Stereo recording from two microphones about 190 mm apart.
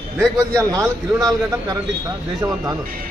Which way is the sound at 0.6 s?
15° right (ahead or behind).